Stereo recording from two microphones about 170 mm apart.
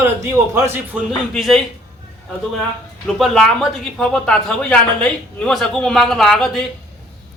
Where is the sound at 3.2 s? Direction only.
Centre (ahead or behind).